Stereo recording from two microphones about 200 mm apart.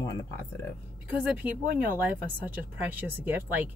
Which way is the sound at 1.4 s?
10° right (ahead or behind).